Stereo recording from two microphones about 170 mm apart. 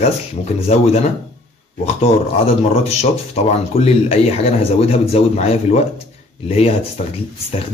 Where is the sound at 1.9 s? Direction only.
35° left (ahead or behind).